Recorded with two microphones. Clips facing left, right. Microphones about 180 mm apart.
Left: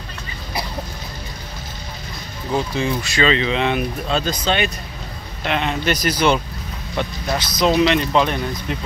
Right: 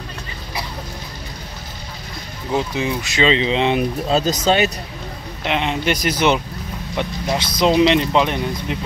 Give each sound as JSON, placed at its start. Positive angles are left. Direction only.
{"t": 2.5, "sound": "speech", "side_deg": -15}
{"t": 5.4, "sound": "speech", "side_deg": -20}